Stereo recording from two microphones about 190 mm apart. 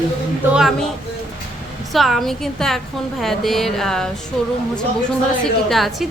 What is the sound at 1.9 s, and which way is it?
A woman's voice, centre (ahead or behind).